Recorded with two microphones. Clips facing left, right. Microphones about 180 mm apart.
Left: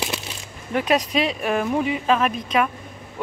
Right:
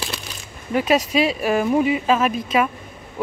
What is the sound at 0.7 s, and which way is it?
Speech, 5° right (ahead or behind).